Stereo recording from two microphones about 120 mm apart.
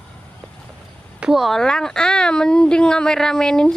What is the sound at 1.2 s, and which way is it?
Speech, centre (ahead or behind).